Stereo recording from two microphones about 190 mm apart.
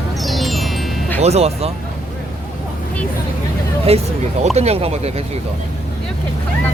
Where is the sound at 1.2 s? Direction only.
35° right (ahead or behind).